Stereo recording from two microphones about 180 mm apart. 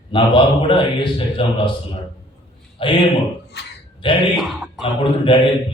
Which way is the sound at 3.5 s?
70° left (ahead or behind).